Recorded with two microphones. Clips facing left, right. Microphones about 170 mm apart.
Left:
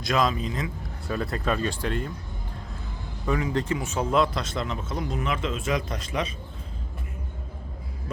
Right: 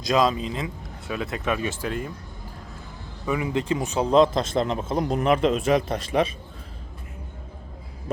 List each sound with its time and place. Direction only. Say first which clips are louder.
0.1 s a man's voice: right 3 dB; 20° right (ahead or behind)
1.0 s speech: even; 5° right (ahead or behind)
3.2 s speech: right 1 dB; 10° right (ahead or behind)
4.0 s a man's voice: right 7 dB; 25° right (ahead or behind)
4.9 s speech: right 7 dB; 55° right (ahead or behind)